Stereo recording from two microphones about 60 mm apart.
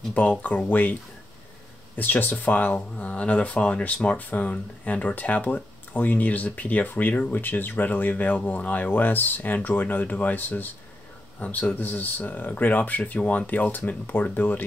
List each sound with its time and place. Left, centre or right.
0.4 s speech: left
2.0 s speech: left